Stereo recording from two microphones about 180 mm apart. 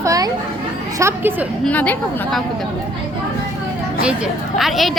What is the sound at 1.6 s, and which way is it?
Speech, 10° left (ahead or behind).